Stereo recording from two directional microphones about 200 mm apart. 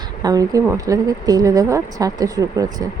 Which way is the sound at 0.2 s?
15° right (ahead or behind).